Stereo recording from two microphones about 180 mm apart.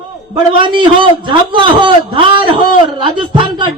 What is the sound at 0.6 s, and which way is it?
A man's voice, 25° right (ahead or behind).